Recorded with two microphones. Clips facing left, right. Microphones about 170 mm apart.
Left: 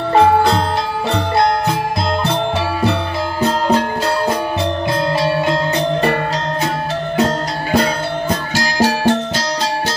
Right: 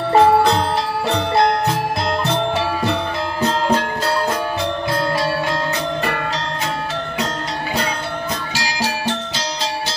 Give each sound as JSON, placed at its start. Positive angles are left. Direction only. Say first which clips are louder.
{"t": 0.1, "sound": "music", "louder": "left 1 dB", "side_deg": 0}
{"t": 7.7, "sound": "music", "louder": "left 9 dB", "side_deg": 45}